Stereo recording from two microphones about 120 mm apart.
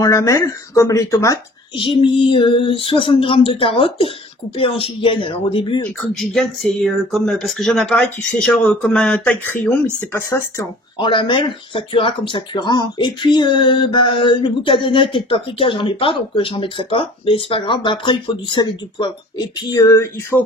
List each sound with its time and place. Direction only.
0.0 s speech: 25° left (ahead or behind)
1.8 s speech: 45° left (ahead or behind)
6.1 s speech: centre (ahead or behind)
11.0 s speech: 45° left (ahead or behind); by 20.4 s 20° left (ahead or behind)